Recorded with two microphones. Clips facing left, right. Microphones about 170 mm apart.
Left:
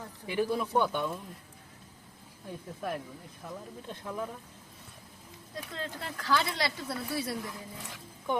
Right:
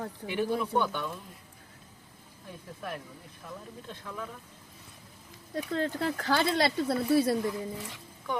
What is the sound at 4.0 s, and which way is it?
Speech, 25° left (ahead or behind).